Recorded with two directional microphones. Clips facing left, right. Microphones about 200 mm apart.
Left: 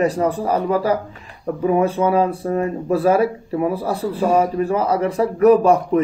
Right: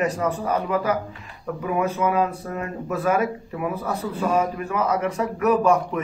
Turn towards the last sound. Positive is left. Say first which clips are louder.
# left 5 dB
turn(degrees=30)  # may be behind; listen again after turning